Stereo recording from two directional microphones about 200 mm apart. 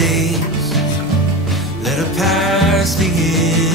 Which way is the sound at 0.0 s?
Centre (ahead or behind).